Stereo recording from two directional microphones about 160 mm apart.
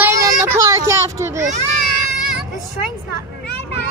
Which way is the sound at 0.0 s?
20° right (ahead or behind).